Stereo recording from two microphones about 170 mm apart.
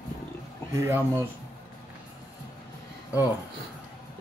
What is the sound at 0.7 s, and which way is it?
Speech, 15° right (ahead or behind).